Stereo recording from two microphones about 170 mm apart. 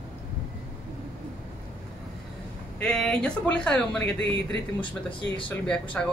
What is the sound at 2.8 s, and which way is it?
A woman's voice, 5° left (ahead or behind).